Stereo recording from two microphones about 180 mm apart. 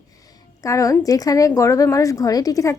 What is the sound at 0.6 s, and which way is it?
A woman's voice, 20° left (ahead or behind).